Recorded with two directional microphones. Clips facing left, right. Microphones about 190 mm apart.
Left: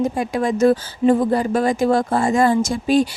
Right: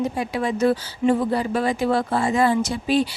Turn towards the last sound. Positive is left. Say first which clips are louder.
# left 4 dB
turn(degrees=45)  # may be behind; listen again after turning